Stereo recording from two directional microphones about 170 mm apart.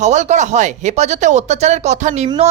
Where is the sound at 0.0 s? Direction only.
45° right (ahead or behind).